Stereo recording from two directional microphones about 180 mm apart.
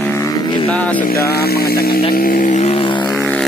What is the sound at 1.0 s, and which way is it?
Speech, 60° left (ahead or behind).